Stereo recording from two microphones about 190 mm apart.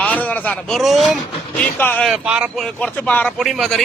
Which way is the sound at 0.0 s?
10° left (ahead or behind).